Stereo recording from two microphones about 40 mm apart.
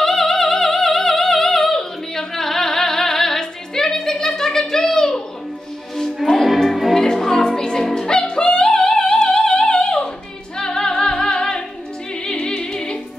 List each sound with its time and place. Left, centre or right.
0.0 s music: centre